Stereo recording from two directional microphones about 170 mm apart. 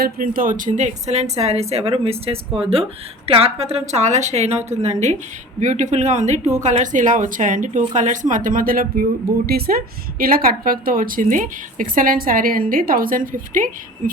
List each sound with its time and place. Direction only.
0.0 s a woman's voice: 55° right (ahead or behind)